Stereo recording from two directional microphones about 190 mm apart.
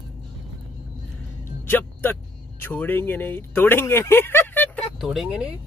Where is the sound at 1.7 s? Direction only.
10° left (ahead or behind).